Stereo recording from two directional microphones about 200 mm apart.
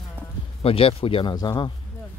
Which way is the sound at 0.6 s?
30° left (ahead or behind).